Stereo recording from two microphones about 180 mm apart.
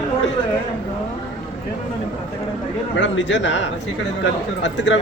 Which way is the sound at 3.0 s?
90° left.